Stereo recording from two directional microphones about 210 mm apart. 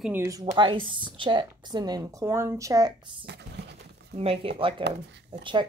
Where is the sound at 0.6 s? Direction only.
25° right (ahead or behind).